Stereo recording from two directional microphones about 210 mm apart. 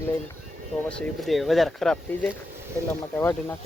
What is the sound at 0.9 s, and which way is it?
Speech, 5° left (ahead or behind).